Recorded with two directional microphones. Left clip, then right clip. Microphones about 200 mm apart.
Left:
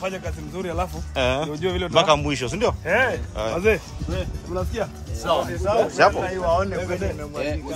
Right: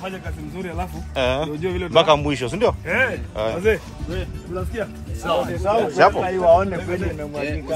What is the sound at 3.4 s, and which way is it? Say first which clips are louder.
Speech: right 5 dB; 15° left (ahead or behind).